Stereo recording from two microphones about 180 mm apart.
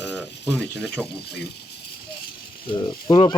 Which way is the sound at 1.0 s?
65° left (ahead or behind).